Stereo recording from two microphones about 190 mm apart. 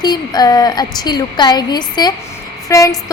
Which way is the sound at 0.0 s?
20° left (ahead or behind).